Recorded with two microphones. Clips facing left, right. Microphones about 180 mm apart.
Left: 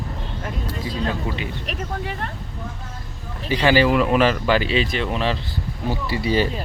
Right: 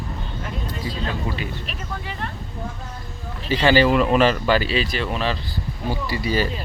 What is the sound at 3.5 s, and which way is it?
Speech, 10° left (ahead or behind).